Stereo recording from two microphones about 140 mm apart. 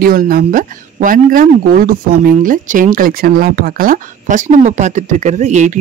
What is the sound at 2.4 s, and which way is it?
Speech, 70° right (ahead or behind).